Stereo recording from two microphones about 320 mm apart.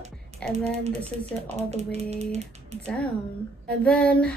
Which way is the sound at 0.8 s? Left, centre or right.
Centre.